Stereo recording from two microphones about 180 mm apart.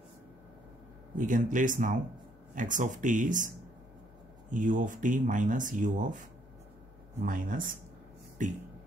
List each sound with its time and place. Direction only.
1.1 s speech: 45° right (ahead or behind)
4.5 s speech: 45° right (ahead or behind)